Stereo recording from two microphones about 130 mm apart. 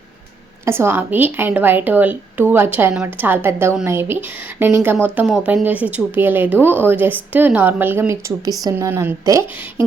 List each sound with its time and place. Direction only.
0.6 s speech: 20° right (ahead or behind)